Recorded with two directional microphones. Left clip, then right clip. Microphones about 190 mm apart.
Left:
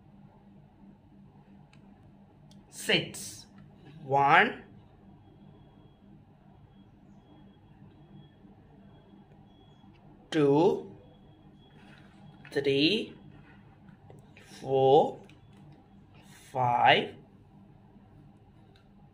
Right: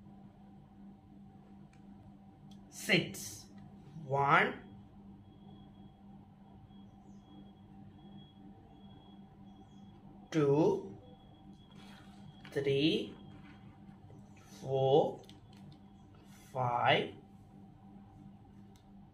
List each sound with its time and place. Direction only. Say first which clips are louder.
2.5 s a sound: left 4 dB; 55° left (ahead or behind)
4.1 s speech: left 7 dB; 55° left (ahead or behind)
10.3 s speech: left 6 dB; 60° left (ahead or behind)
12.4 s speech: left 5 dB; 55° left (ahead or behind)
14.7 s speech: left 7 dB; 60° left (ahead or behind)
16.5 s speech: left 7 dB; 60° left (ahead or behind)